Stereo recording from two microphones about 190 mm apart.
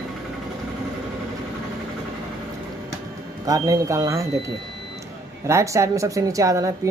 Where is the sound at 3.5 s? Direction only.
20° right (ahead or behind).